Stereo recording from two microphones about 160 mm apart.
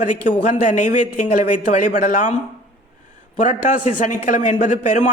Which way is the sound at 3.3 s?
50° left (ahead or behind).